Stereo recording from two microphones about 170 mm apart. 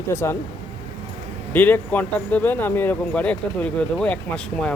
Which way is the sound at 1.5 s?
10° left (ahead or behind).